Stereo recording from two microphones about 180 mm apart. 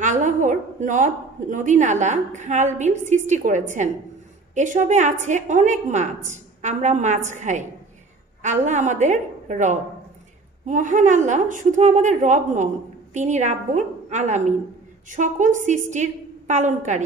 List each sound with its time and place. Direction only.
0.0 s a woman's voice: 45° right (ahead or behind)